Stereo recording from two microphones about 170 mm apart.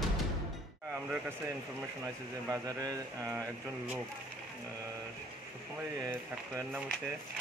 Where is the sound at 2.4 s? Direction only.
20° right (ahead or behind).